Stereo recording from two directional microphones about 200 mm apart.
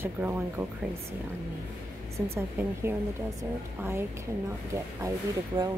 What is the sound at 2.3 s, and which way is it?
Speech, 10° right (ahead or behind).